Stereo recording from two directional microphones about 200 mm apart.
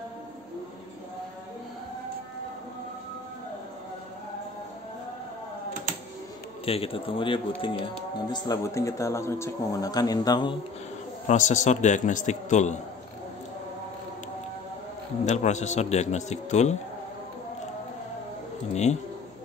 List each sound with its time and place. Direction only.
6.6 s speech: 30° left (ahead or behind)
11.2 s a man's voice: 35° left (ahead or behind)
15.2 s a man's voice: 35° left (ahead or behind)
18.7 s a man's voice: 35° left (ahead or behind)